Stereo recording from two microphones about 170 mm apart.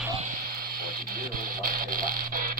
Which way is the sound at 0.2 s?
50° right (ahead or behind).